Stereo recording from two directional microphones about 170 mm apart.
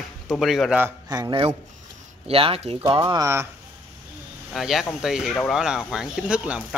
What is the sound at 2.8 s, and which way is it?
Speech, 25° right (ahead or behind).